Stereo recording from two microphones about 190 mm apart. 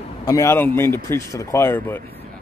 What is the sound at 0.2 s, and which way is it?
A man's voice, 20° left (ahead or behind).